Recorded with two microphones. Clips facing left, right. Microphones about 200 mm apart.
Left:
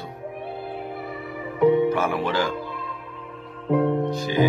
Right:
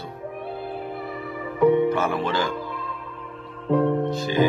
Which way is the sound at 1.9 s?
10° left (ahead or behind).